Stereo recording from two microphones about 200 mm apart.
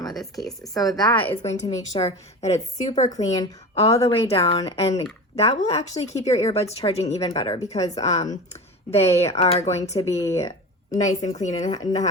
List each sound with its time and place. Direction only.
0.7 s a woman's voice: 20° left (ahead or behind); by 3.2 s 35° left (ahead or behind)
3.2 s speech: 15° left (ahead or behind)
3.8 s a woman's voice: 30° left (ahead or behind)
10.0 s speech: 15° left (ahead or behind)
11.0 s speech: 35° left (ahead or behind)